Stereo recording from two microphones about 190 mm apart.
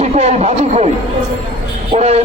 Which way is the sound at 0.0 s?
35° right (ahead or behind).